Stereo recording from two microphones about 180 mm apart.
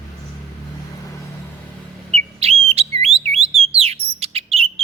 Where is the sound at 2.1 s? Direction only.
35° right (ahead or behind).